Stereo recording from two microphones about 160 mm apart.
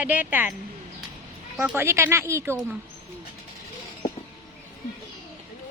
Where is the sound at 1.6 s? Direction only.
15° right (ahead or behind).